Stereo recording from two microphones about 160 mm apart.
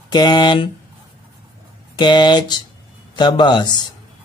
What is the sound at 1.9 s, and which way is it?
Speech, 30° left (ahead or behind).